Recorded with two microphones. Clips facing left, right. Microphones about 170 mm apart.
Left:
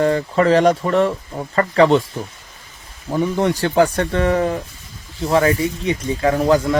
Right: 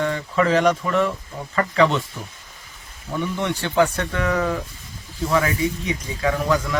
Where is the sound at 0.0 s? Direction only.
35° left (ahead or behind).